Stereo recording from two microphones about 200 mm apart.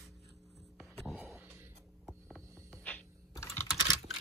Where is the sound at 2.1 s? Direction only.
5° left (ahead or behind).